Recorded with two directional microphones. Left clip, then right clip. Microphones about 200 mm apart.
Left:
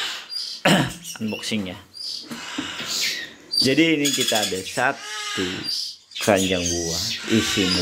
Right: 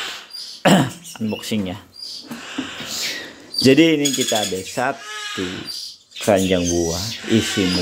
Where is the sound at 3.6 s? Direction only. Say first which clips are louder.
Right 5 dB; 20° right (ahead or behind).